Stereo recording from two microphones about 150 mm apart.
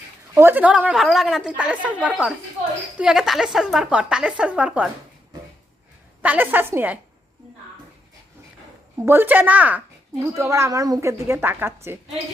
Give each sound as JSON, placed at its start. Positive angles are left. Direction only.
{"t": 0.3, "sound": "a woman's voice", "side_deg": -15}
{"t": 6.2, "sound": "a woman's voice", "side_deg": -10}
{"t": 9.0, "sound": "a woman's voice", "side_deg": -15}